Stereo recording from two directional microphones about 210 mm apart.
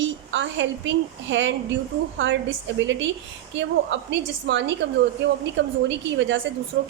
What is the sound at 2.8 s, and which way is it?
A woman's voice, 60° right (ahead or behind).